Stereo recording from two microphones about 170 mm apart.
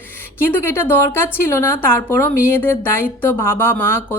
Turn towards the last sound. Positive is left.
turn(degrees=15)  # may be behind; listen again after turning